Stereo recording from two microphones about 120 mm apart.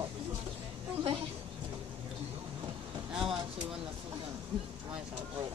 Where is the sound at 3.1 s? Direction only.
5° right (ahead or behind).